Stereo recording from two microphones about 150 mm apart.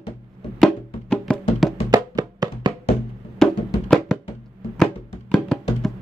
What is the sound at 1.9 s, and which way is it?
Music, 25° right (ahead or behind).